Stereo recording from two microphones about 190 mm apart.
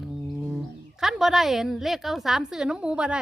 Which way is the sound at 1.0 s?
Centre (ahead or behind).